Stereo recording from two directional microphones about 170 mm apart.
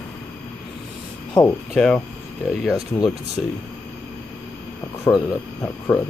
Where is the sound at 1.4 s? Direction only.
25° left (ahead or behind).